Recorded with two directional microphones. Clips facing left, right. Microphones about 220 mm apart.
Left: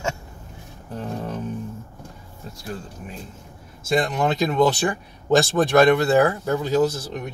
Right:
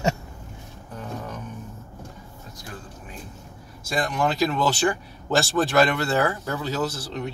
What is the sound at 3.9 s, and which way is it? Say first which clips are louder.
Speech: left 2 dB; 20° left (ahead or behind).